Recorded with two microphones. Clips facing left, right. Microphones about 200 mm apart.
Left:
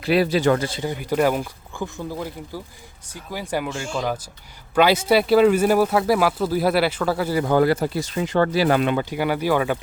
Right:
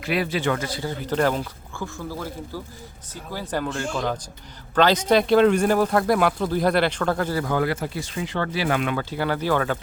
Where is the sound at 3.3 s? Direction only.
10° left (ahead or behind).